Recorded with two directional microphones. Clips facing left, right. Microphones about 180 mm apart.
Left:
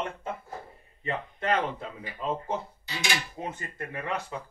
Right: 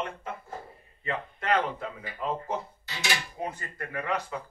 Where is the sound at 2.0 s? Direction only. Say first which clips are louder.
Left 2 dB; 15° left (ahead or behind).